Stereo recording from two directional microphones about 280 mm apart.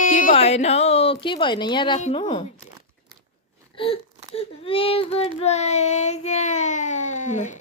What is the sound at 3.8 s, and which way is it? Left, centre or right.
Speech, centre.